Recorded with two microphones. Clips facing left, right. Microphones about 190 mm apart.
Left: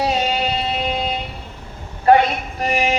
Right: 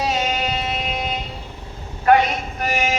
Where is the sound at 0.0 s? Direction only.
30° left (ahead or behind).